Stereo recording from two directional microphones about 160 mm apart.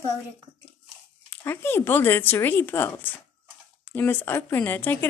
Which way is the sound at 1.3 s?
15° left (ahead or behind).